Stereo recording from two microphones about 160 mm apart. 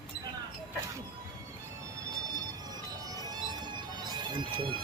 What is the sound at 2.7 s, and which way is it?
Music, 25° right (ahead or behind).